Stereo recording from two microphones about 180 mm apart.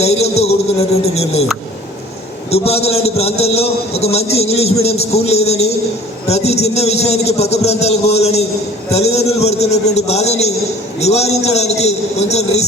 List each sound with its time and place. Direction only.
0.0 s a man's voice: 35° left (ahead or behind)
1.1 s a sound: 35° left (ahead or behind)
2.5 s a man's voice: 35° left (ahead or behind)